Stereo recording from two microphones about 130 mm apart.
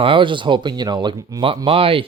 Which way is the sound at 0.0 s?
40° right (ahead or behind).